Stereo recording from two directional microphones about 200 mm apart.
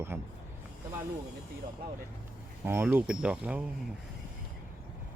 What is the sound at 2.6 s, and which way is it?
Speech, 10° right (ahead or behind).